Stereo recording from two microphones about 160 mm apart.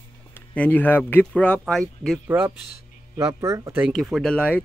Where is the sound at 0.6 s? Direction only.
10° left (ahead or behind).